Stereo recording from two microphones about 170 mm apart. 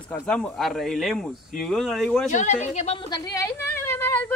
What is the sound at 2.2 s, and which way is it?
Speech, 45° left (ahead or behind).